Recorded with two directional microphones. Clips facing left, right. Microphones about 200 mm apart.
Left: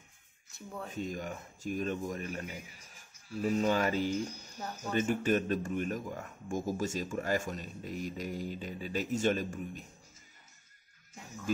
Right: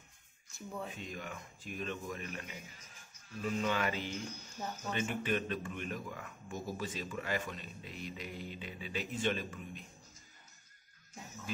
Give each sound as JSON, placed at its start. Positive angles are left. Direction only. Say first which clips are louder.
{"t": 0.5, "sound": "speech", "louder": "even", "side_deg": 0}
{"t": 0.9, "sound": "speech", "louder": "left 7 dB", "side_deg": 40}
{"t": 2.5, "sound": "speech", "louder": "left 4 dB", "side_deg": 10}
{"t": 3.3, "sound": "speech", "louder": "left 6 dB", "side_deg": 40}
{"t": 4.3, "sound": "speech", "louder": "even", "side_deg": 10}
{"t": 4.9, "sound": "a man's voice", "louder": "left 7 dB", "side_deg": 40}